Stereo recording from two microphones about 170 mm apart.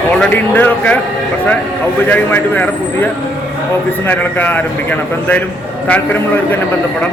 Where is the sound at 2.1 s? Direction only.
10° left (ahead or behind).